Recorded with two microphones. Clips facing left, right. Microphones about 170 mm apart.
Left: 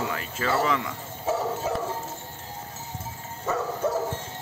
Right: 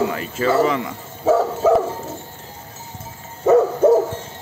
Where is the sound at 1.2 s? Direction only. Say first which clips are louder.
Right 11 dB; 90° right.